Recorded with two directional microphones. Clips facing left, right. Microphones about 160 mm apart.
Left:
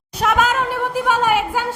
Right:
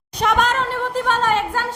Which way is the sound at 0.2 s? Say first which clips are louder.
Left 1 dB; 5° left (ahead or behind).